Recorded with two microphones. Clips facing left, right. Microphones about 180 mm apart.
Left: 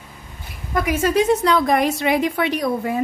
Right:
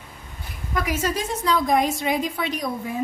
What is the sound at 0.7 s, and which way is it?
A woman's voice, 55° left (ahead or behind).